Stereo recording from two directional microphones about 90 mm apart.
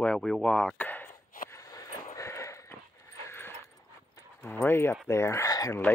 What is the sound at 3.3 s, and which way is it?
Dog, 25° left (ahead or behind).